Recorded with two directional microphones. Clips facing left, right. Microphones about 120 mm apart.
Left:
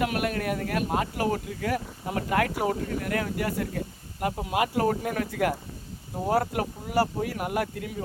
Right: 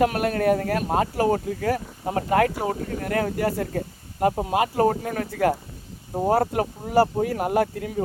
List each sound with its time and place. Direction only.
0.0 s speech: 35° right (ahead or behind)